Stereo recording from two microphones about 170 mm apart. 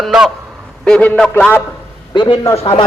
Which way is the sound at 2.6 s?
35° left (ahead or behind).